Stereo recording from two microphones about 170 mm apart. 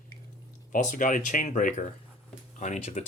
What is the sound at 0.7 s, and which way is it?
Speech, 50° left (ahead or behind).